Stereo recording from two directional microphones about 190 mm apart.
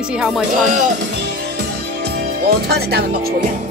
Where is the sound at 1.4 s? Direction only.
60° right (ahead or behind).